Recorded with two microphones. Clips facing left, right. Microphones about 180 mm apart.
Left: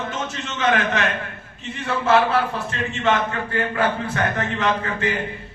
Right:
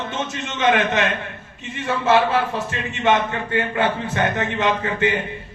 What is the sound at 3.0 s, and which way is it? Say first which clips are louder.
A man's voice: right 2 dB; 20° right (ahead or behind).